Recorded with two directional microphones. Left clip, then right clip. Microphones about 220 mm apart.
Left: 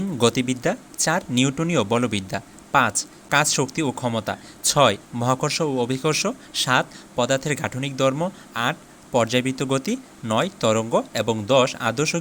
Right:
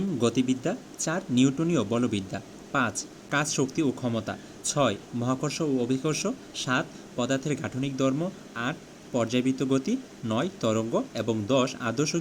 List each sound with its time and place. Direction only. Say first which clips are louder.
0.2 s speech: left 7 dB; 25° left (ahead or behind)